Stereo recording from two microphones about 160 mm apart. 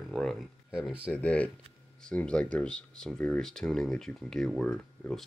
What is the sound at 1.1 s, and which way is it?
Speech, 10° left (ahead or behind).